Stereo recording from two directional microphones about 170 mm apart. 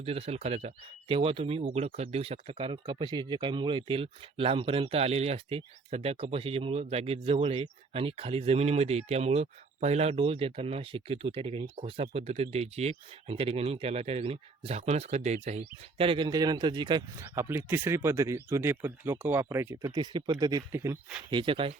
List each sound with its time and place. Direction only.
0.0 s speech: 35° right (ahead or behind)
17.3 s speech: 15° right (ahead or behind)
21.3 s speech: 30° right (ahead or behind)